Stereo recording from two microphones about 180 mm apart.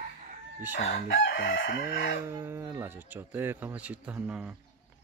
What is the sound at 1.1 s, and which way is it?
Chicken, 90° left.